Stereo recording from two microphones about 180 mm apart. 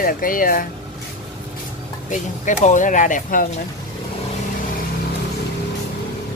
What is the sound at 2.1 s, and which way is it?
Speech, 45° left (ahead or behind).